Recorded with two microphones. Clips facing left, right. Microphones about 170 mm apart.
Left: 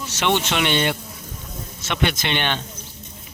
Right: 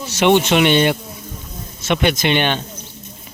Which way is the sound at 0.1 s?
15° right (ahead or behind).